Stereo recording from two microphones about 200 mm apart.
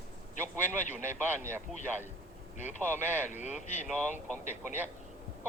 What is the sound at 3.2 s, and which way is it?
Speech, 35° left (ahead or behind).